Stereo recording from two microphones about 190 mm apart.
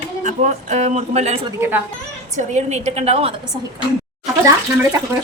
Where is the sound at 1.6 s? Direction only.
10° right (ahead or behind).